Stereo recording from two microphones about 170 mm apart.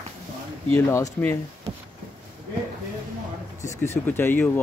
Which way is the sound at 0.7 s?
15° left (ahead or behind).